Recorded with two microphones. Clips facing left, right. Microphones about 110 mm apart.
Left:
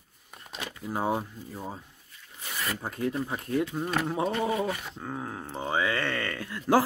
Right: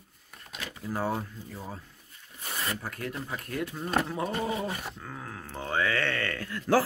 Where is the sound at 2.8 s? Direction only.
20° left (ahead or behind).